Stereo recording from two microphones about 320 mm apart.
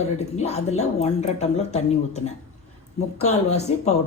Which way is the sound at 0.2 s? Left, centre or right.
Centre.